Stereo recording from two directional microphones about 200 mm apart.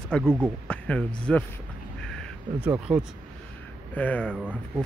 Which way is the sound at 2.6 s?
10° right (ahead or behind).